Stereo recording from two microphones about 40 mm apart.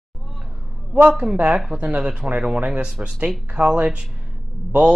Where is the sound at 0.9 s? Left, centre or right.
Right.